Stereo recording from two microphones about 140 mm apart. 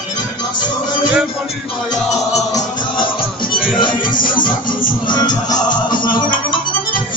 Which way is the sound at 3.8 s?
35° left (ahead or behind).